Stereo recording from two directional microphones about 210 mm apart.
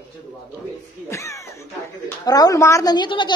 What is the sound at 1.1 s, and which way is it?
A woman's voice, 15° left (ahead or behind).